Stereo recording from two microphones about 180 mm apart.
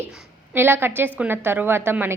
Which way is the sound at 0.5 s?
10° right (ahead or behind).